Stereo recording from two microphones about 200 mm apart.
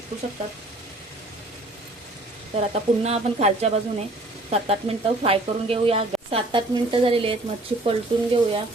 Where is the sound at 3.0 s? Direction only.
30° right (ahead or behind).